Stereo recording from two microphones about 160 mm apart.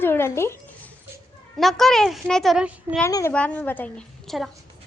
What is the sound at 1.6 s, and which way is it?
A child's voice, centre (ahead or behind).